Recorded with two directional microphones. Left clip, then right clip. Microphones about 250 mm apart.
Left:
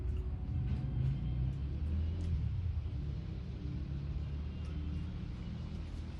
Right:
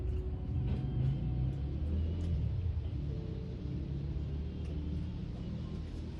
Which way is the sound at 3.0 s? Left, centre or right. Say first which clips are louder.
Right 5 dB; centre.